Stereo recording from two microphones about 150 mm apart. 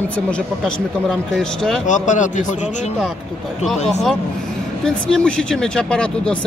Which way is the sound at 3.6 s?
Centre (ahead or behind).